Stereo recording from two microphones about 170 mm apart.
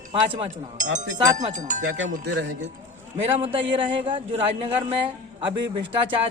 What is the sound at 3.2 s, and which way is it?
Speech, 35° right (ahead or behind).